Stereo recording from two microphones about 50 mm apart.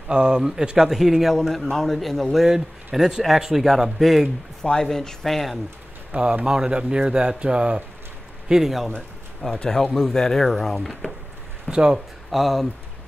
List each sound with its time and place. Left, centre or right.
0.1 s speech: centre
1.5 s speech: centre
4.6 s speech: centre
6.1 s speech: centre
8.5 s speech: centre
9.4 s speech: centre
11.7 s speech: centre
12.3 s speech: centre